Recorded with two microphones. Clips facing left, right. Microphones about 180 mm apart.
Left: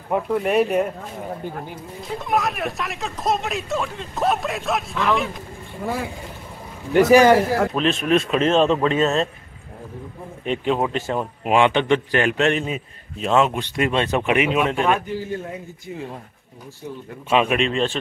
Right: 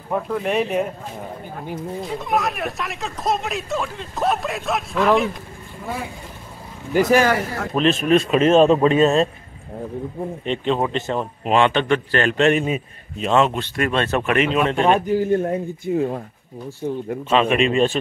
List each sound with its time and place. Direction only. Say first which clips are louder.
0.1 s speech: left 2 dB; 5° left (ahead or behind)
2.1 s speech: left 1 dB; centre (ahead or behind)
7.1 s speech: left 5 dB; 15° left (ahead or behind)
7.7 s speech: right 2 dB; centre (ahead or behind)
10.4 s speech: left 1 dB; 10° left (ahead or behind)
12.4 s speech: right 3 dB; centre (ahead or behind)
13.5 s speech: even; 15° left (ahead or behind)
15.0 s speech: right 9 dB; 50° right (ahead or behind)
16.8 s speech: right 8 dB; 40° right (ahead or behind)
17.3 s speech: right 1 dB; 10° left (ahead or behind)
17.6 s speech: right 4 dB; 10° right (ahead or behind)